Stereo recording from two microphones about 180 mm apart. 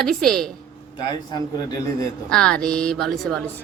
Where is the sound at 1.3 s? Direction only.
20° left (ahead or behind).